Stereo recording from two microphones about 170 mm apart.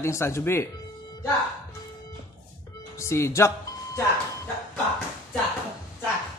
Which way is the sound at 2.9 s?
15° left (ahead or behind).